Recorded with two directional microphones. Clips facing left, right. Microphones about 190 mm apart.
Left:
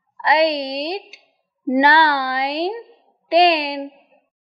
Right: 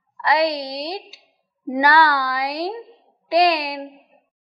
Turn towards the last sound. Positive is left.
turn(degrees=25)  # may be behind; listen again after turning